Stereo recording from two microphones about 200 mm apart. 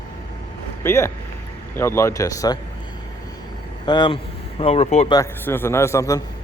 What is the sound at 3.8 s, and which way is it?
Speech, 20° left (ahead or behind).